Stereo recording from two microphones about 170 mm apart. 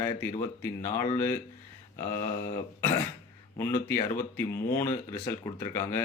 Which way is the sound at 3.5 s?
15° left (ahead or behind).